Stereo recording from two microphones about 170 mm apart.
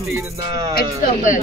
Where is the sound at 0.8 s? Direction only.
50° left (ahead or behind).